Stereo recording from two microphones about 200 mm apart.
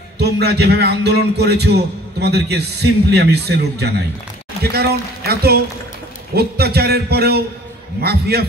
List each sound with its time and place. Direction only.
0.2 s a man's voice: 55° right (ahead or behind)